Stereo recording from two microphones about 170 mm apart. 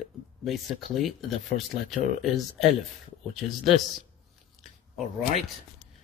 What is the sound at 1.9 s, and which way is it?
Speech, centre (ahead or behind).